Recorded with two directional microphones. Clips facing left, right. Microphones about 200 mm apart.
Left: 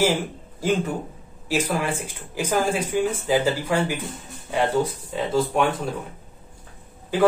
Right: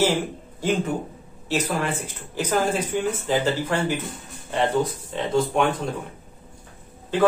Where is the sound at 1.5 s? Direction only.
10° left (ahead or behind).